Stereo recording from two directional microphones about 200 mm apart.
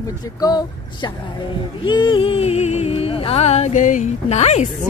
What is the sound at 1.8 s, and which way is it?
Music, 25° left (ahead or behind).